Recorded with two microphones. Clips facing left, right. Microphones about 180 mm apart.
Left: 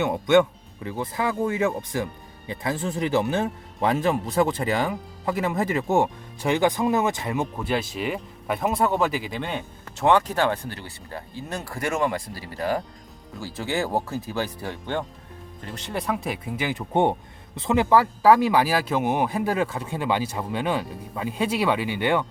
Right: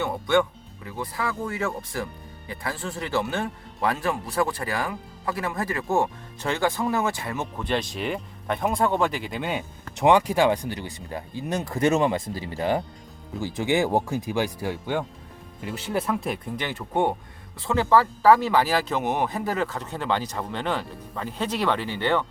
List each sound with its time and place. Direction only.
0.0 s speech: 20° left (ahead or behind)
16.9 s speech: 25° left (ahead or behind)